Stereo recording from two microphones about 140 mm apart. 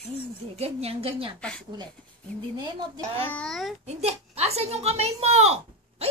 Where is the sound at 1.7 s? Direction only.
30° right (ahead or behind).